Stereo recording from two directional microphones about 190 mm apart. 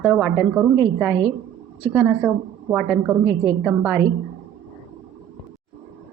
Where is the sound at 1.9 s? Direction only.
10° right (ahead or behind).